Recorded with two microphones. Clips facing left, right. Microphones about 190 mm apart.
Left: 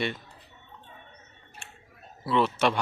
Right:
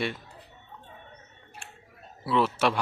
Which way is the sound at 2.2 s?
5° right (ahead or behind).